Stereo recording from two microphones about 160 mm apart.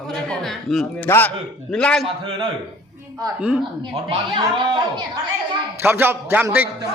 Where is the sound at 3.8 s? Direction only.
30° right (ahead or behind).